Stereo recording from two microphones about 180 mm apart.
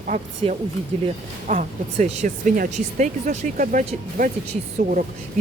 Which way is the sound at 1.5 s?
45° right (ahead or behind).